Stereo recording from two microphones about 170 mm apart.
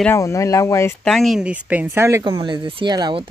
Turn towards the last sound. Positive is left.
turn(degrees=-25)  # may be behind; listen again after turning